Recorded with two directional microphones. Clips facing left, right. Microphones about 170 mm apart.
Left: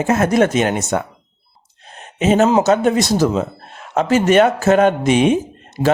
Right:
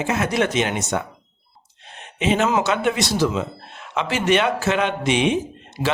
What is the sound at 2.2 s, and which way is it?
A man's voice, 40° left (ahead or behind).